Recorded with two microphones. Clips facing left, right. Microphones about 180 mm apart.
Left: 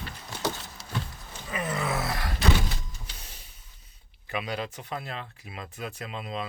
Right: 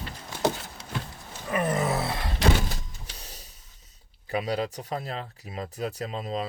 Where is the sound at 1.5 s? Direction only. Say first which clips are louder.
Right 5 dB; 50° right (ahead or behind).